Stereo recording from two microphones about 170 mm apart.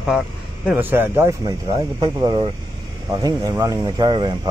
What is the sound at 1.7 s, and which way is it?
Speech, 30° right (ahead or behind).